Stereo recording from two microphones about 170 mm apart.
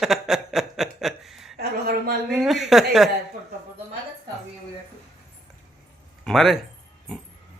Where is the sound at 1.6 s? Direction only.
70° right (ahead or behind).